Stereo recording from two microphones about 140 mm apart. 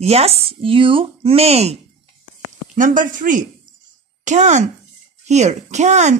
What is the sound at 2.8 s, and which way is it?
Speech, 70° right (ahead or behind).